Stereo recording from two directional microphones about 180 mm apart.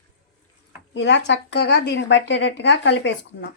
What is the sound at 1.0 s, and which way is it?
Speech, 75° left (ahead or behind).